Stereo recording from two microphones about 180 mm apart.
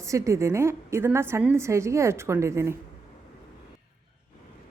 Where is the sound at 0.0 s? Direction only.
15° right (ahead or behind).